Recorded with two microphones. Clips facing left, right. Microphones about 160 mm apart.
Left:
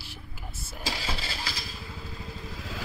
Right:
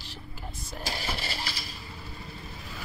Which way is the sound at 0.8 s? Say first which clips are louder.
Left 1 dB; 90° left.